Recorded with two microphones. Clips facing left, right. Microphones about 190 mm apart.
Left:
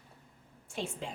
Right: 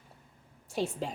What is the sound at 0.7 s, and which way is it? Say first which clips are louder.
Speech: right 6 dB; 40° right (ahead or behind).